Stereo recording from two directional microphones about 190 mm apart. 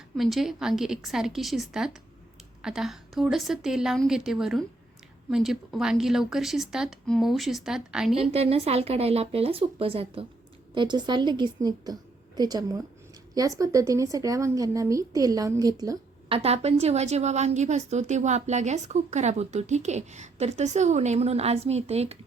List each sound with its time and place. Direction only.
0.2 s speech: centre (ahead or behind)
8.1 s a woman's voice: 30° right (ahead or behind)
16.4 s a woman's voice: 35° right (ahead or behind)